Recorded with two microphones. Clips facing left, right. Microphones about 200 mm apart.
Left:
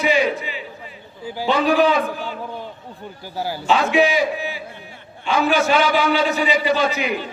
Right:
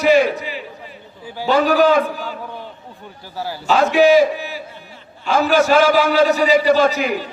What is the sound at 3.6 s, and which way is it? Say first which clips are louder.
A man's voice: right 5 dB; 40° right (ahead or behind).